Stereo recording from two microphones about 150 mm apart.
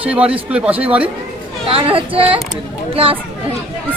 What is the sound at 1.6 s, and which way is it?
Speech, 35° right (ahead or behind).